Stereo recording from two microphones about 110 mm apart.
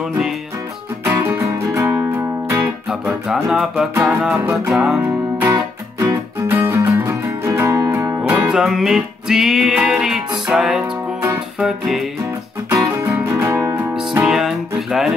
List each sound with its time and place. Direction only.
1.0 s music: 20° right (ahead or behind); by 5.0 s 5° right (ahead or behind)
5.0 s music: 25° right (ahead or behind)
8.2 s music: 10° right (ahead or behind)
12.7 s music: 25° right (ahead or behind)
14.1 s music: 5° right (ahead or behind)